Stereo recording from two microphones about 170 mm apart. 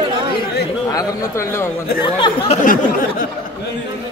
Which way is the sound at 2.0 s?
30° left (ahead or behind).